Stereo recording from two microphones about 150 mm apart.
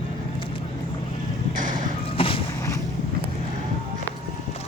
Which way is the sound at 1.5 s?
60° right (ahead or behind).